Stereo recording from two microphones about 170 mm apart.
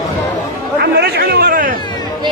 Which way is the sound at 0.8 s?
70° right (ahead or behind).